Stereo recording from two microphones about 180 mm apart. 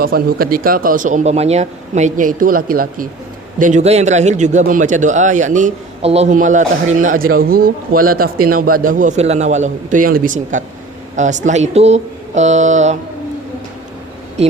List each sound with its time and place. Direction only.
0.0 s a man's voice: 55° right (ahead or behind)
3.6 s a man's voice: 40° right (ahead or behind)
14.4 s speech: 35° right (ahead or behind)